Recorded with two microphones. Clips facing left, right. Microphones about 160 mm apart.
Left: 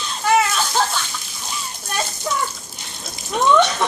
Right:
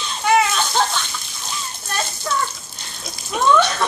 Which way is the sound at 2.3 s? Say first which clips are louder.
Right 1 dB; 15° left (ahead or behind).